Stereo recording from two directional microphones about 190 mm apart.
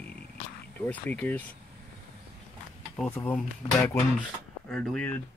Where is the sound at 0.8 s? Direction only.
10° left (ahead or behind).